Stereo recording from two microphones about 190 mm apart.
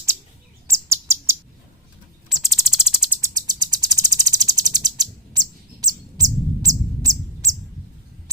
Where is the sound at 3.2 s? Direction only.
20° right (ahead or behind).